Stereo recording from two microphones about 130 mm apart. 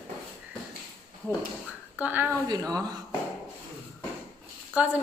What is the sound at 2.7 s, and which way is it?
Speech, 30° right (ahead or behind).